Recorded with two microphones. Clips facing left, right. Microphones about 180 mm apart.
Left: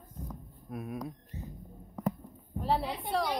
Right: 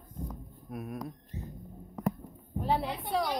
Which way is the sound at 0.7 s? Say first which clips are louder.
Even; centre (ahead or behind).